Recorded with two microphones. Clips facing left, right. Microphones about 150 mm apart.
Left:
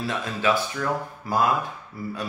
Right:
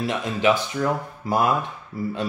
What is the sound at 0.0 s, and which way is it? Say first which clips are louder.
Speech: right 4 dB; 20° right (ahead or behind).